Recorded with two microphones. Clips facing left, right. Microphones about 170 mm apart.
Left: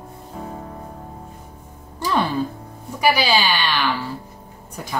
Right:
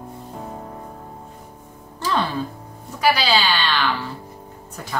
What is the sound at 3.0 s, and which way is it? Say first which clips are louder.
Speech: left 1 dB; 15° left (ahead or behind).